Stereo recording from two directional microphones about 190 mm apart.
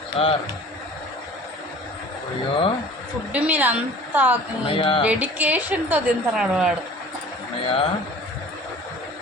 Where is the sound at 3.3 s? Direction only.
10° right (ahead or behind).